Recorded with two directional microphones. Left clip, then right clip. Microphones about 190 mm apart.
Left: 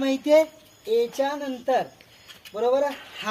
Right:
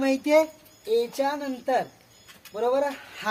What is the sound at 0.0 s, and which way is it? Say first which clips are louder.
Speech: left 2 dB; 15° right (ahead or behind).